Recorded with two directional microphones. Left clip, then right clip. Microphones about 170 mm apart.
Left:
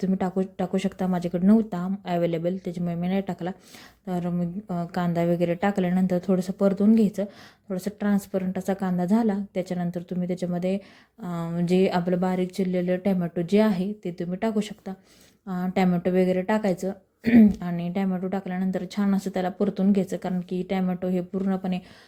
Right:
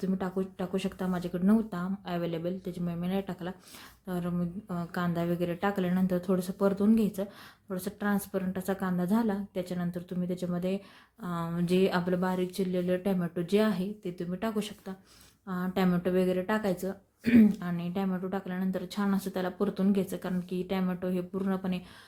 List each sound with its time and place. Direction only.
0.0 s a woman's voice: 35° left (ahead or behind)